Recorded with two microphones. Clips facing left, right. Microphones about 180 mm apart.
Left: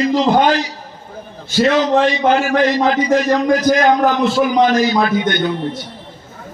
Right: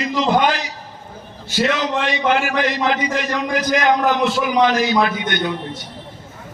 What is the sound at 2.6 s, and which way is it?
A man's voice, 35° left (ahead or behind).